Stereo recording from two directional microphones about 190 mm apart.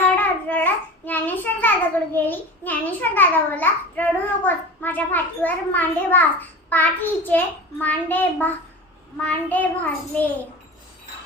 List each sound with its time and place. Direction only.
0.2 s child singing: 10° left (ahead or behind)
2.1 s a child's voice: 10° left (ahead or behind)